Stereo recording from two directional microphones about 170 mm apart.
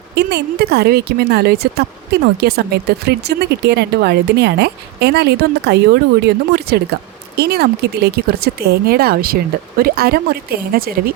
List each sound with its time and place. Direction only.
0.2 s speech: 70° right (ahead or behind)